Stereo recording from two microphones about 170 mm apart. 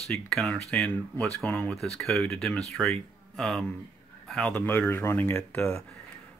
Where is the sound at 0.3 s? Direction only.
5° left (ahead or behind).